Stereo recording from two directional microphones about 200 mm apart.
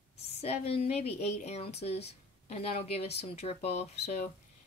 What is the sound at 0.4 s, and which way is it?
A woman's voice, 30° left (ahead or behind).